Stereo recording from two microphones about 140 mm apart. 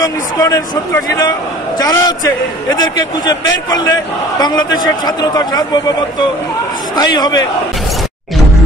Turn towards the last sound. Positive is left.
turn(degrees=30)  # may be behind; listen again after turning